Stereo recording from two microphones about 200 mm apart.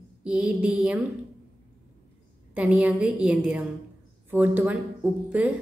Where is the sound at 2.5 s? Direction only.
5° right (ahead or behind).